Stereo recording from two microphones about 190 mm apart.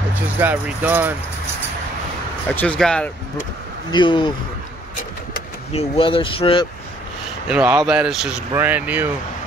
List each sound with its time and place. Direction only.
0.4 s speech: 10° right (ahead or behind)
2.5 s speech: 5° left (ahead or behind)
3.9 s speech: 25° left (ahead or behind)
5.7 s speech: 30° left (ahead or behind)
7.4 s speech: 5° right (ahead or behind)